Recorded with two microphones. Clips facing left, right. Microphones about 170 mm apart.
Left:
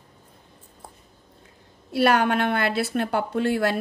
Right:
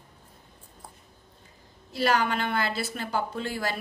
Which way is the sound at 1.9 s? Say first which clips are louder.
Left 5 dB; 60° left (ahead or behind).